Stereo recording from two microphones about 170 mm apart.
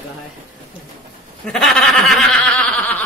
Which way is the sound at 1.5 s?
Centre (ahead or behind).